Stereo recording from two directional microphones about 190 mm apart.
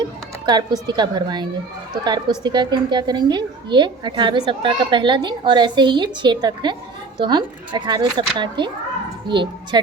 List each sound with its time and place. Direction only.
0.4 s a woman's voice: 20° right (ahead or behind)